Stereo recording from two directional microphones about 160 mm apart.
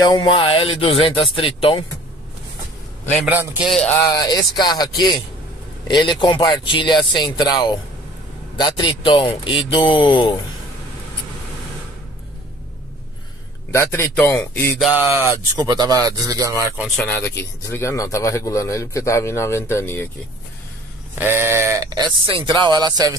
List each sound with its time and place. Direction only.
0.1 s speech: 30° left (ahead or behind)
3.3 s a man's voice: 10° right (ahead or behind)
3.9 s a sound: 25° left (ahead or behind)
8.5 s speech: 25° left (ahead or behind)
13.7 s speech: 15° left (ahead or behind)
15.0 s speech: 15° right (ahead or behind)
17.0 s speech: 15° left (ahead or behind)
21.1 s speech: 10° right (ahead or behind)